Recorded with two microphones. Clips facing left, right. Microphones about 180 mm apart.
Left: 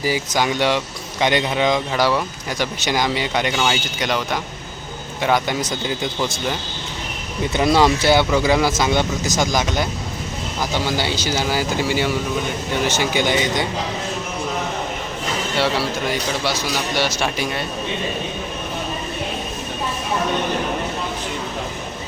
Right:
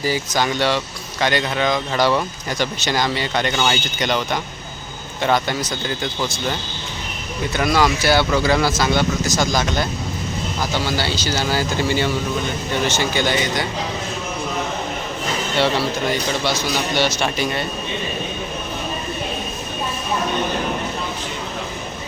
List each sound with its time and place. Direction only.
0.0 s speech: 15° left (ahead or behind)
7.5 s speech: 25° left (ahead or behind)
15.5 s speech: 5° left (ahead or behind)